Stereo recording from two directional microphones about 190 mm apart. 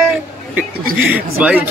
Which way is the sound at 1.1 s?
10° right (ahead or behind).